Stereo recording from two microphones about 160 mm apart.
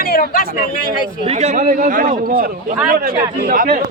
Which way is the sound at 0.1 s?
60° left (ahead or behind).